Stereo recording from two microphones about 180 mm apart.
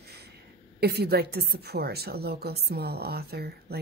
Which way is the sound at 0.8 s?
65° right (ahead or behind).